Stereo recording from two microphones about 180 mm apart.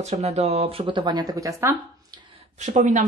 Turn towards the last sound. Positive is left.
turn(degrees=-45)  # may be behind; listen again after turning